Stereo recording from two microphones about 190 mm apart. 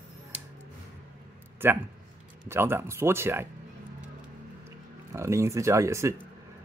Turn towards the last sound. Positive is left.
turn(degrees=-15)  # may be behind; listen again after turning